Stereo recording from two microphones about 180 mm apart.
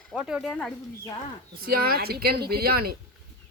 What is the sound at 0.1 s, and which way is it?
Speech, 5° right (ahead or behind).